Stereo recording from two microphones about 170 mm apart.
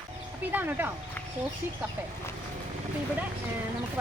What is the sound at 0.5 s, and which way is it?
Speech, 10° right (ahead or behind).